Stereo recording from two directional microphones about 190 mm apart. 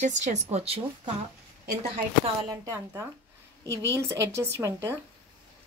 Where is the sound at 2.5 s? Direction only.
15° right (ahead or behind).